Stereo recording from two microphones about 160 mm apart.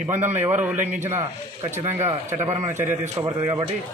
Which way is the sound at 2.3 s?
45° right (ahead or behind).